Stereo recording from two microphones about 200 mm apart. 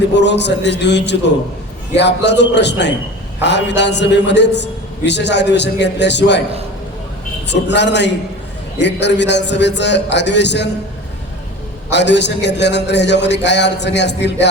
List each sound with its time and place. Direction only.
0.1 s a man's voice: 60° left (ahead or behind)
7.4 s a man's voice: 60° left (ahead or behind)
11.9 s a man's voice: 60° left (ahead or behind)